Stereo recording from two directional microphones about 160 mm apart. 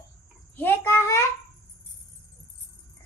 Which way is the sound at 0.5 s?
10° left (ahead or behind).